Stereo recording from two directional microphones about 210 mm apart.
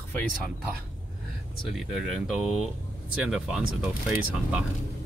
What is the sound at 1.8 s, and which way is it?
Speech, centre (ahead or behind).